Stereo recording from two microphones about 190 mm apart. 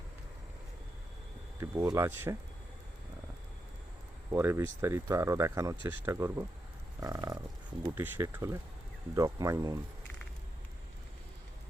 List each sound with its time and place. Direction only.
1.6 s speech: 15° right (ahead or behind)
4.3 s speech: 15° right (ahead or behind)
7.0 s a sound: 20° right (ahead or behind)
7.9 s speech: 10° right (ahead or behind)